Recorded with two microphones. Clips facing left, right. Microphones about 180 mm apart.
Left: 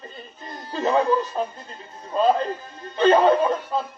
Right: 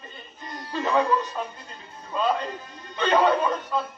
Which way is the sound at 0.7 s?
35° left (ahead or behind).